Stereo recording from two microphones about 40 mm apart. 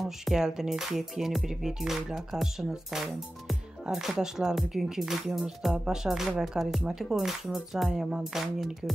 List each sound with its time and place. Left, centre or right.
0.0 s speech: centre